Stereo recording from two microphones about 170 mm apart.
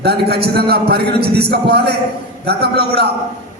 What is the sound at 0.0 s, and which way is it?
A man's voice, 70° right (ahead or behind).